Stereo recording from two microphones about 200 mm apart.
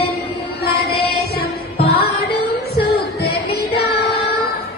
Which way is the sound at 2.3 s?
55° left (ahead or behind).